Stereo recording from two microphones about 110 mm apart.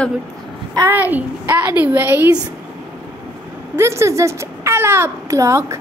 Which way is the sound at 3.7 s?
25° right (ahead or behind).